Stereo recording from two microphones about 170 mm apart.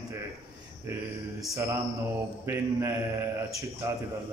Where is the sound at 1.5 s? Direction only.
15° right (ahead or behind).